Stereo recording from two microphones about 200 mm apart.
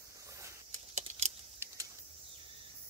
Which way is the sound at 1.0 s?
35° right (ahead or behind).